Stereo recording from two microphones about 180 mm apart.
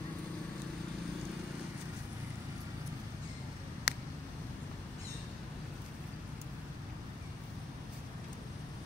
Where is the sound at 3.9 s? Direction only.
65° left (ahead or behind).